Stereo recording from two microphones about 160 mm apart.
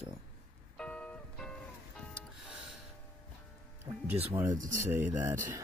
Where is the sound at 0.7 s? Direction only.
5° left (ahead or behind).